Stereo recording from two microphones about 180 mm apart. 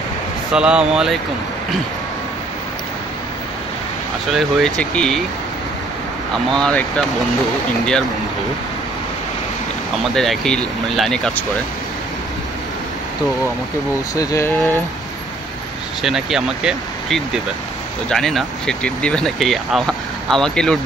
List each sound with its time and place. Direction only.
0.5 s speech: 5° right (ahead or behind)
4.3 s speech: centre (ahead or behind)
6.3 s speech: 5° left (ahead or behind)
10.1 s speech: centre (ahead or behind)
14.1 s speech: 20° left (ahead or behind)
16.0 s speech: centre (ahead or behind)